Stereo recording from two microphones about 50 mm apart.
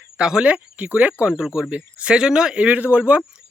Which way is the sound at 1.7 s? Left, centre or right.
Right.